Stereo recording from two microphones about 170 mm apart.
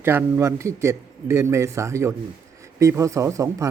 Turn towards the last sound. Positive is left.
turn(degrees=-20)  # may be behind; listen again after turning